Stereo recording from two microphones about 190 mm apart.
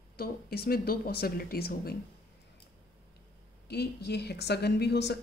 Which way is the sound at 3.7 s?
60° left (ahead or behind).